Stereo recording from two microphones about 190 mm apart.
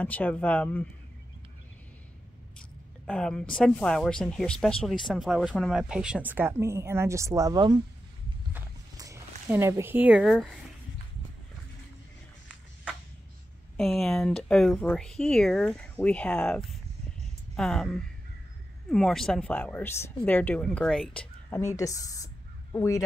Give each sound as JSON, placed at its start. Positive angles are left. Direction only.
{"t": 0.0, "sound": "a woman's voice", "side_deg": 10}
{"t": 3.1, "sound": "speech", "side_deg": 5}
{"t": 8.9, "sound": "a sound", "side_deg": -20}
{"t": 9.5, "sound": "speech", "side_deg": -15}
{"t": 13.7, "sound": "a woman's voice", "side_deg": 0}